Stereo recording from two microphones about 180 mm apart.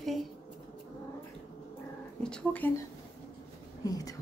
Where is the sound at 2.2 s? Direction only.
5° left (ahead or behind).